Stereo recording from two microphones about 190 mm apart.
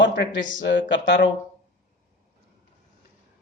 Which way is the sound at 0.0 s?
75° left (ahead or behind).